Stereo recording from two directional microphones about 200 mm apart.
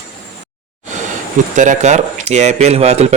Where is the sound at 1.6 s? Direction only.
35° right (ahead or behind).